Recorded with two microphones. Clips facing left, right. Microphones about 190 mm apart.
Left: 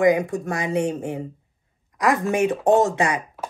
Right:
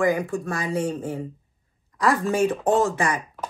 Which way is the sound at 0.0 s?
20° left (ahead or behind).